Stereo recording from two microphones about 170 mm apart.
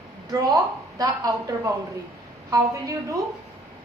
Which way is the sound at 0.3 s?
20° right (ahead or behind).